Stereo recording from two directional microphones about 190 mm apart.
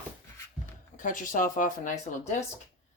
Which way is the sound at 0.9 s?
45° left (ahead or behind).